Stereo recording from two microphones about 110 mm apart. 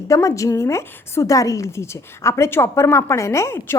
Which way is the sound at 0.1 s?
30° left (ahead or behind).